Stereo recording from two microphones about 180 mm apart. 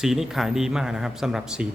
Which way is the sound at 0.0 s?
5° right (ahead or behind).